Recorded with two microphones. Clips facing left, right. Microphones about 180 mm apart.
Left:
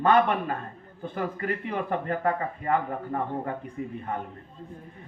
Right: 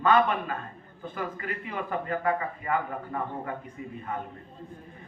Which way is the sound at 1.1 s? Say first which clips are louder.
Left 5 dB; 40° left (ahead or behind).